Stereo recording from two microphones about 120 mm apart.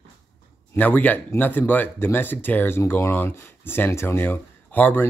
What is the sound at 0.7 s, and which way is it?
A man's voice, 15° left (ahead or behind).